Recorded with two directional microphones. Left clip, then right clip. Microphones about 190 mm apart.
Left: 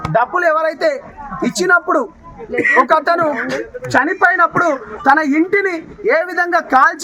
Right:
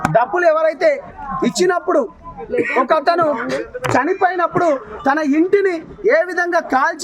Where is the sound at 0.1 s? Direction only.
10° left (ahead or behind).